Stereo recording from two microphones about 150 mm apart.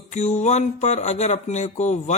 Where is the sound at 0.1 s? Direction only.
50° left (ahead or behind).